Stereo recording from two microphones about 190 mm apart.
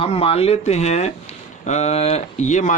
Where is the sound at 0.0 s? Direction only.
30° left (ahead or behind).